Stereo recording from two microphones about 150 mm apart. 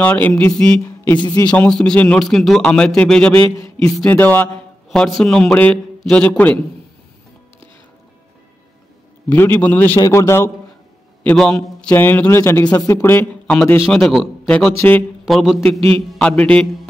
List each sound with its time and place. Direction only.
0.0 s a man's voice: 10° left (ahead or behind)
0.6 s a sound: 10° left (ahead or behind)
1.5 s a man's voice: 5° left (ahead or behind)
9.3 s a man's voice: 15° left (ahead or behind)
11.2 s a man's voice: 5° left (ahead or behind)
13.8 s speech: centre (ahead or behind)
14.8 s a man's voice: 15° left (ahead or behind)
15.2 s a man's voice: centre (ahead or behind)